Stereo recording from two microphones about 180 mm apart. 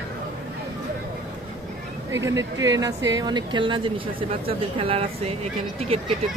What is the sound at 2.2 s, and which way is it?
Speech, 15° right (ahead or behind).